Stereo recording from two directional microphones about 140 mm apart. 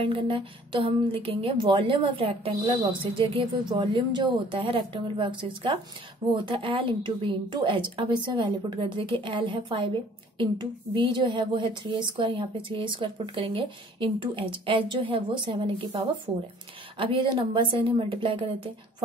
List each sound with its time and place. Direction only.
0.0 s speech: 40° right (ahead or behind)